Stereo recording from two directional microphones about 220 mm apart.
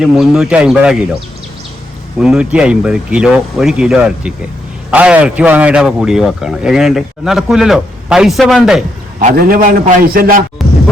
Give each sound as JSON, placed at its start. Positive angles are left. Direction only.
{"t": 0.0, "sound": "a man's voice", "side_deg": 0}
{"t": 2.1, "sound": "a man's voice", "side_deg": -5}
{"t": 9.1, "sound": "a man's voice", "side_deg": -40}